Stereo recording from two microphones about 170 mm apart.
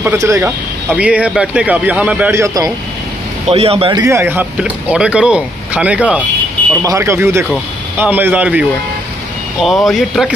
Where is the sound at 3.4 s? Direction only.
35° right (ahead or behind).